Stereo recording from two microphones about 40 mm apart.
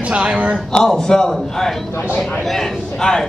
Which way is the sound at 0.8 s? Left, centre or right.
Centre.